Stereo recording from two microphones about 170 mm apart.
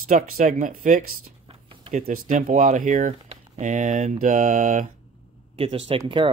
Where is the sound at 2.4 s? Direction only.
50° right (ahead or behind).